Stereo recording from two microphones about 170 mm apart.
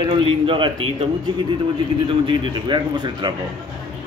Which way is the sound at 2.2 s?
30° right (ahead or behind).